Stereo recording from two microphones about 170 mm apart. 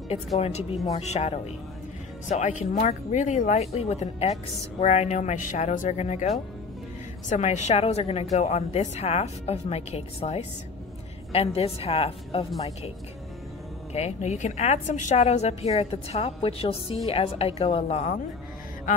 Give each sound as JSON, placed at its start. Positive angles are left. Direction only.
{"t": 0.4, "sound": "a woman's voice", "side_deg": 40}
{"t": 11.5, "sound": "a woman's voice", "side_deg": 35}
{"t": 13.9, "sound": "a woman's voice", "side_deg": 40}